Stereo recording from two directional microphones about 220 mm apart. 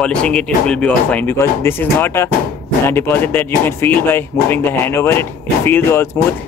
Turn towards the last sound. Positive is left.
turn(degrees=10)  # may be behind; listen again after turning